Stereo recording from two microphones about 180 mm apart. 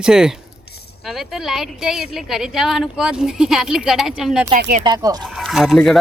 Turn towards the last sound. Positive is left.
turn(degrees=0)  # may be behind; listen again after turning